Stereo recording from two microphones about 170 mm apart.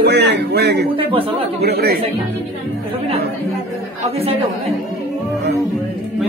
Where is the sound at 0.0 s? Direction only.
80° right.